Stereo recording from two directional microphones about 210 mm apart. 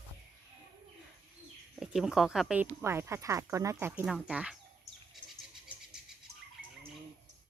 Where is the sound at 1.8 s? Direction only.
Centre (ahead or behind).